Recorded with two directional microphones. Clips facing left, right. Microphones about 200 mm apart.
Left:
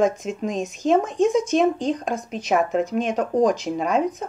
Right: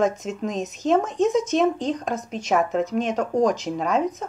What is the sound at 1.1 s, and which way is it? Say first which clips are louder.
A woman's voice: left 1 dB; centre (ahead or behind).